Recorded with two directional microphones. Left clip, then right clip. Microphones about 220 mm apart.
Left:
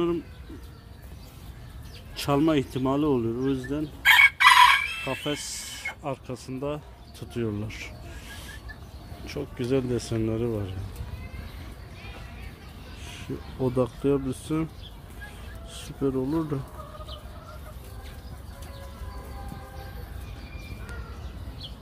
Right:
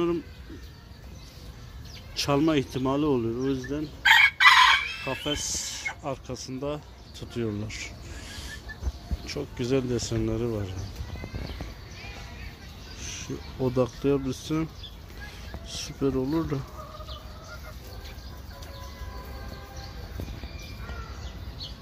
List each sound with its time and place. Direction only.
2.1 s speech: 10° left (ahead or behind)
3.5 s chicken: 20° left (ahead or behind)
5.0 s speech: 10° left (ahead or behind)
13.6 s speech: 5° left (ahead or behind)
16.0 s speech: centre (ahead or behind)